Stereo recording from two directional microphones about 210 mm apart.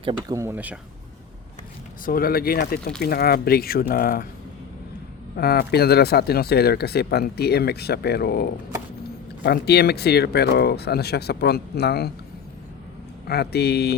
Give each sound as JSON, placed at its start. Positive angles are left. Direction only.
{"t": 0.0, "sound": "speech", "side_deg": -20}
{"t": 2.0, "sound": "speech", "side_deg": 45}
{"t": 5.4, "sound": "speech", "side_deg": 50}
{"t": 13.2, "sound": "speech", "side_deg": 50}